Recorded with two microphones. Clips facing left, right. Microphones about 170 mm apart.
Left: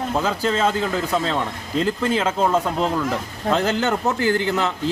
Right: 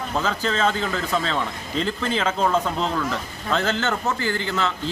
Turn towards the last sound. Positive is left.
turn(degrees=15)  # may be behind; listen again after turning